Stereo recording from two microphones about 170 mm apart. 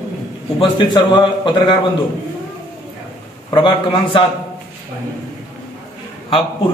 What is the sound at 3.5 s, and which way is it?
Speech, 30° left (ahead or behind).